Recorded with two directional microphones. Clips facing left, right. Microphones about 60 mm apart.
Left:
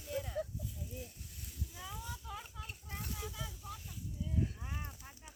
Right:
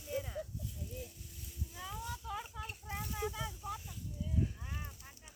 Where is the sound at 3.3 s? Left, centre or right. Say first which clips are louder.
Right 5 dB; right.